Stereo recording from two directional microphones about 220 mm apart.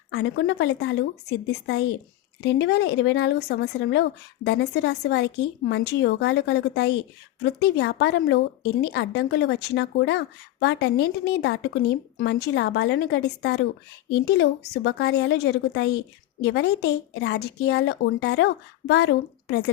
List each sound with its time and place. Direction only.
0.1 s speech: 55° left (ahead or behind)